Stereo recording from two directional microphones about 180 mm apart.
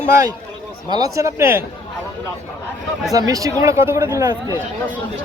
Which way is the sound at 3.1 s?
20° right (ahead or behind).